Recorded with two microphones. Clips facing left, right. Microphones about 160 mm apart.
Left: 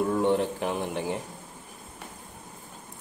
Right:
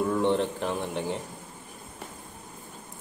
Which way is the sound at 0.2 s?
10° left (ahead or behind).